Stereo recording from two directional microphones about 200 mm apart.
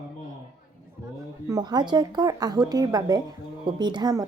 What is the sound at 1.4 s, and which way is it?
Speech, 20° right (ahead or behind).